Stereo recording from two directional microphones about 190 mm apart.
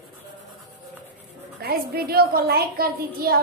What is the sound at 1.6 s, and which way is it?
A woman's voice, 55° right (ahead or behind).